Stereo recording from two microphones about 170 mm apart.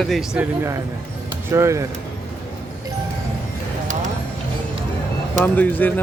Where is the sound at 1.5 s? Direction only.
15° right (ahead or behind).